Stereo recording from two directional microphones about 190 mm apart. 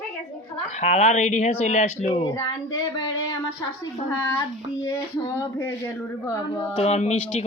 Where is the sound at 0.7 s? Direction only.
35° left (ahead or behind).